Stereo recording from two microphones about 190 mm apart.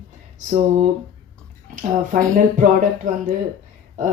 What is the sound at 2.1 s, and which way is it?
Speech, 40° right (ahead or behind).